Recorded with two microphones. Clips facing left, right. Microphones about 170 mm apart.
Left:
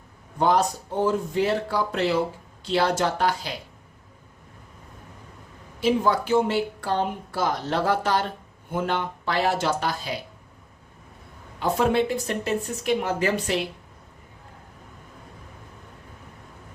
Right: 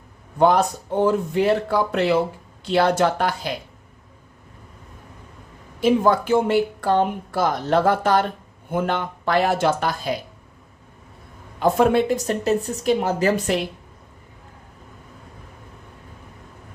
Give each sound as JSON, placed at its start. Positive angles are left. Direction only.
{"t": 0.3, "sound": "a man's voice", "side_deg": -60}
{"t": 5.8, "sound": "speech", "side_deg": -50}
{"t": 11.6, "sound": "a woman's voice", "side_deg": -45}